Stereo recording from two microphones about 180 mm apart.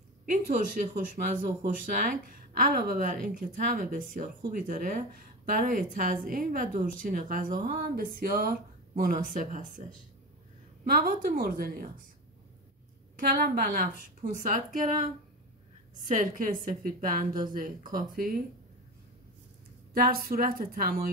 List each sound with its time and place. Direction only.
0.3 s speech: 45° right (ahead or behind)
10.9 s speech: 50° right (ahead or behind)
13.1 s speech: 55° right (ahead or behind)
16.1 s speech: 45° right (ahead or behind)
19.9 s a woman's voice: 55° right (ahead or behind)